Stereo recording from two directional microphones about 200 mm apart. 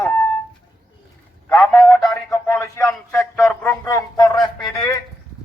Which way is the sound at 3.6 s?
15° left (ahead or behind).